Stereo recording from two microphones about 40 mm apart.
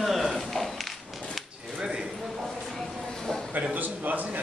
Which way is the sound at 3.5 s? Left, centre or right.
Right.